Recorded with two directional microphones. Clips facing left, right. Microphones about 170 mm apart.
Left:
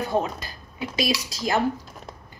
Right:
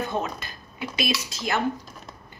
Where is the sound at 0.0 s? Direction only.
35° left (ahead or behind).